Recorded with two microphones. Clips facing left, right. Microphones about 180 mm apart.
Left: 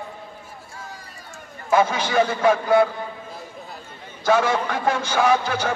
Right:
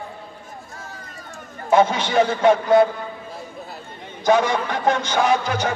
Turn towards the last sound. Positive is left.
turn(degrees=10)  # may be behind; listen again after turning